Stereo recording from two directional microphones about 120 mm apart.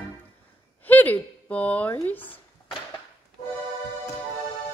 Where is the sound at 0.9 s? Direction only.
15° left (ahead or behind).